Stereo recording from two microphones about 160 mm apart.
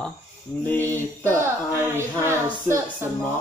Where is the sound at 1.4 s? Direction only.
15° right (ahead or behind).